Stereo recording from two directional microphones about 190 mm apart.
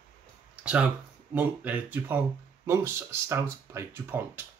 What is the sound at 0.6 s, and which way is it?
Speech, 5° right (ahead or behind).